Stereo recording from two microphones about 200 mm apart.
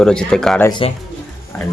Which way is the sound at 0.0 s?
5° left (ahead or behind).